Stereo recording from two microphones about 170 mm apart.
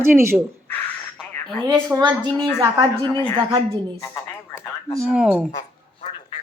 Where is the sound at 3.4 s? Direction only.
30° right (ahead or behind).